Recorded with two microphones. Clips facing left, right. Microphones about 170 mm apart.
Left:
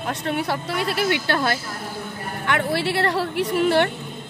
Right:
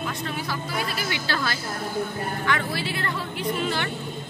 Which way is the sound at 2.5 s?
65° left (ahead or behind).